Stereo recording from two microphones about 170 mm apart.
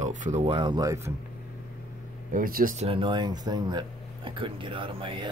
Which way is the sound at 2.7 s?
35° right (ahead or behind).